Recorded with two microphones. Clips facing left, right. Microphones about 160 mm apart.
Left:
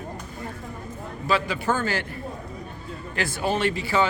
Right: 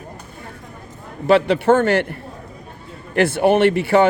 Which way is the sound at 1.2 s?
65° right (ahead or behind).